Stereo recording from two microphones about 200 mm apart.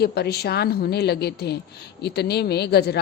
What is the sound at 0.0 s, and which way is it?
A woman's voice, 55° left (ahead or behind).